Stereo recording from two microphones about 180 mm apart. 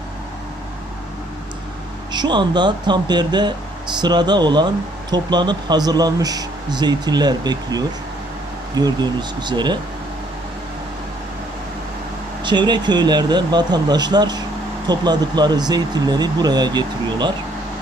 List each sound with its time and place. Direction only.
2.1 s speech: 25° right (ahead or behind)
12.4 s speech: 25° right (ahead or behind)